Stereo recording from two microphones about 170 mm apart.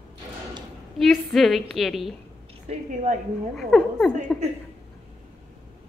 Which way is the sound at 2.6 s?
45° right (ahead or behind).